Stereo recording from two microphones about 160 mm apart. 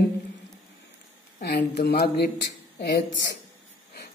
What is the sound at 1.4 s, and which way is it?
Speech, 90° left.